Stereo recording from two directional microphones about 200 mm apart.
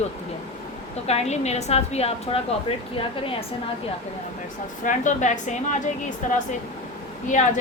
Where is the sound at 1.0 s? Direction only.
35° left (ahead or behind).